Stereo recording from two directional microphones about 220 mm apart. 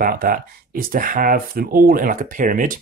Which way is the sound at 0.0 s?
40° right (ahead or behind).